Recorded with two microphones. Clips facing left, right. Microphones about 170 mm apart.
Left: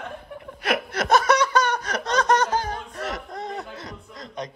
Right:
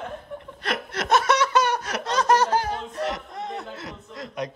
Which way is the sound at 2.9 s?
Centre (ahead or behind).